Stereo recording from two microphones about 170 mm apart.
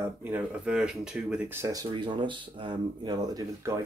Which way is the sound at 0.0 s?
10° right (ahead or behind).